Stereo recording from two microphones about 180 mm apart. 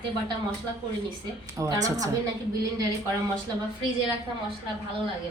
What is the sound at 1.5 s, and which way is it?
Speech, 20° right (ahead or behind).